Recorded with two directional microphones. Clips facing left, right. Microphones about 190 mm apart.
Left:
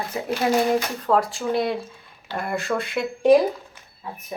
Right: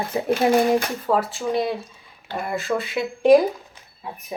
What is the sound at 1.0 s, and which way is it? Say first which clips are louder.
A woman's voice: left 1 dB; 5° right (ahead or behind).